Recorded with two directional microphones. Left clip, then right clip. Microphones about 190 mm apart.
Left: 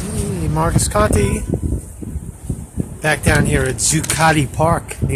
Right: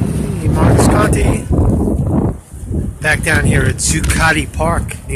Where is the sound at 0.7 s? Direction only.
20° left (ahead or behind).